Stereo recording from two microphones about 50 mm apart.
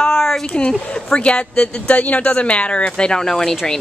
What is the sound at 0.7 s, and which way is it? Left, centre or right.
Speech, left.